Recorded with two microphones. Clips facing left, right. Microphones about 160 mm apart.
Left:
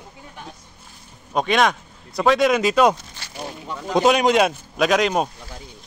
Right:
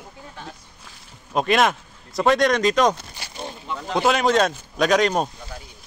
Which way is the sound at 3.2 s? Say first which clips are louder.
Right 2 dB; 15° right (ahead or behind).